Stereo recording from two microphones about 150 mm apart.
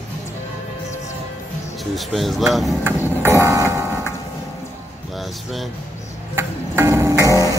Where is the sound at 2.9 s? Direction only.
15° right (ahead or behind).